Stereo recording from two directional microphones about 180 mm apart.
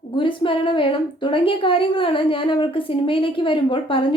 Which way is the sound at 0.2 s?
30° left (ahead or behind).